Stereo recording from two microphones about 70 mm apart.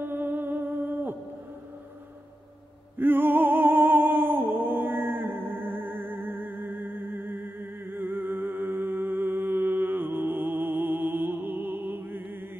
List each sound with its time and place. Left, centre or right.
0.0 s humming: right
3.0 s music: right